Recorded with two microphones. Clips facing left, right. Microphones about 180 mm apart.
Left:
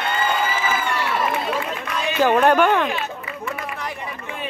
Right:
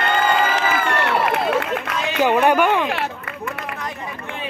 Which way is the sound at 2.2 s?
15° right (ahead or behind).